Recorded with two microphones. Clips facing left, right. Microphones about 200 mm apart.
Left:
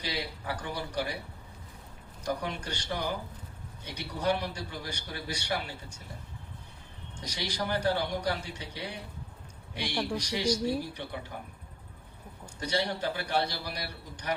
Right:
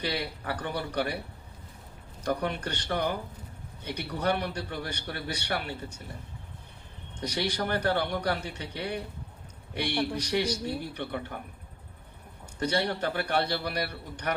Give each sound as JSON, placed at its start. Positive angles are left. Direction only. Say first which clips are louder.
{"t": 0.0, "sound": "a man's voice", "louder": "right 3 dB", "side_deg": -60}
{"t": 2.2, "sound": "a man's voice", "louder": "right 4 dB", "side_deg": -60}
{"t": 7.2, "sound": "a man's voice", "louder": "right 5 dB", "side_deg": -60}
{"t": 12.5, "sound": "a man's voice", "louder": "right 3 dB", "side_deg": -60}